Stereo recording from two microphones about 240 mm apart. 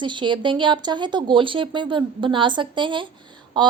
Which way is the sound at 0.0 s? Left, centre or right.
Centre.